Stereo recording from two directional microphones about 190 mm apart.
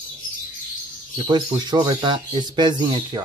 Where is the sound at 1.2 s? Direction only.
20° right (ahead or behind).